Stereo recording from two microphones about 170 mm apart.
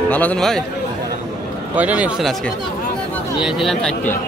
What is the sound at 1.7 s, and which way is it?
Speech, 10° right (ahead or behind).